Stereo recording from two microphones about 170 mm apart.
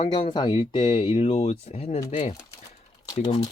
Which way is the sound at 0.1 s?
25° left (ahead or behind).